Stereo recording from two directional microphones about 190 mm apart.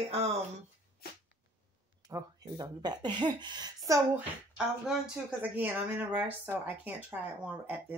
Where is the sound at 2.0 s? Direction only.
20° right (ahead or behind).